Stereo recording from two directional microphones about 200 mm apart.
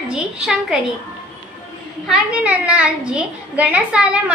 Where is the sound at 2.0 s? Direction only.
5° right (ahead or behind).